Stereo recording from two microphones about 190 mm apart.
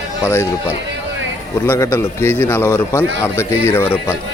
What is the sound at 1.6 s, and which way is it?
A man's voice, 15° left (ahead or behind).